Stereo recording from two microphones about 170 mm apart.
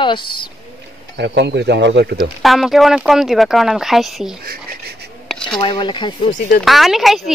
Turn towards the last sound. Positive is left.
turn(degrees=0)  # may be behind; listen again after turning